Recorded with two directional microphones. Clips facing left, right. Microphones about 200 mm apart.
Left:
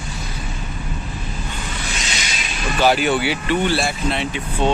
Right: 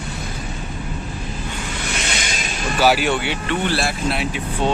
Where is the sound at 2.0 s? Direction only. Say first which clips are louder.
Right 3 dB; 55° right (ahead or behind).